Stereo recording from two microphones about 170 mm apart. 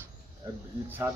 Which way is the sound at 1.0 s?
15° right (ahead or behind).